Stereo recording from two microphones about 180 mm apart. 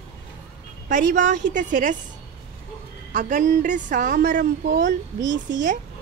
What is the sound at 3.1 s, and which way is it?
A woman's voice, 45° right (ahead or behind).